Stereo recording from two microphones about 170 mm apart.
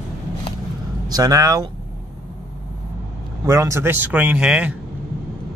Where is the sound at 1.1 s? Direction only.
20° right (ahead or behind).